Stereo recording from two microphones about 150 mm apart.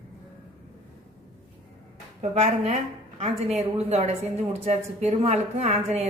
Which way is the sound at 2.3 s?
45° right (ahead or behind).